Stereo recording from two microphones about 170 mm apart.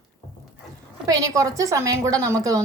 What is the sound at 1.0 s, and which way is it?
A woman's voice, 20° right (ahead or behind).